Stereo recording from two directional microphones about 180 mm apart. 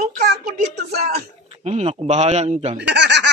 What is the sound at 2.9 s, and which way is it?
Speech, 75° right (ahead or behind).